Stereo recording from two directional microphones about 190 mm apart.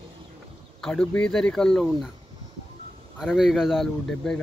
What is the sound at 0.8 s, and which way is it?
Speech, 5° left (ahead or behind).